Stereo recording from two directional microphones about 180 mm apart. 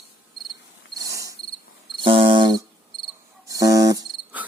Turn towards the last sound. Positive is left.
turn(degrees=-10)  # may be behind; listen again after turning